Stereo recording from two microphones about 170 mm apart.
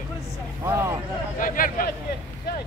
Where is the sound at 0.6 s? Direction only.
15° right (ahead or behind).